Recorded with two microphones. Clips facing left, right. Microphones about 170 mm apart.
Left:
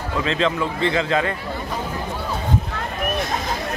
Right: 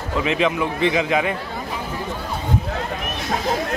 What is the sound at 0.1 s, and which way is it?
Speech, 15° right (ahead or behind).